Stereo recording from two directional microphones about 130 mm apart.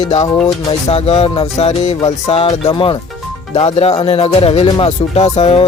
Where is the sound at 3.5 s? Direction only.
50° left (ahead or behind).